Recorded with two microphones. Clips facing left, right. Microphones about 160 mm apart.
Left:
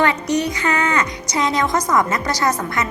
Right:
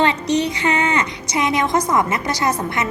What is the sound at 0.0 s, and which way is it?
A woman's voice, 25° right (ahead or behind).